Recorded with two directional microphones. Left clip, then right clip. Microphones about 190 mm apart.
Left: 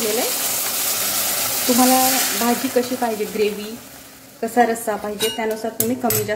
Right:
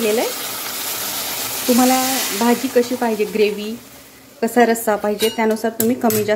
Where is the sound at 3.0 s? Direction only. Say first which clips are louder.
Right 3 dB; 40° right (ahead or behind).